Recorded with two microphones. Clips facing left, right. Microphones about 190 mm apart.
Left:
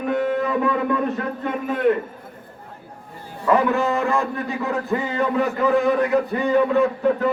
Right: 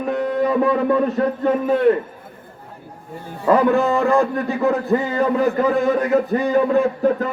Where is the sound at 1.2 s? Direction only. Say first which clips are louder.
Right 8 dB; 35° right (ahead or behind).